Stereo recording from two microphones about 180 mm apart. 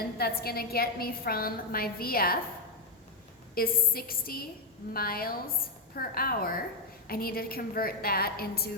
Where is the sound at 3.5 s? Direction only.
55° left (ahead or behind).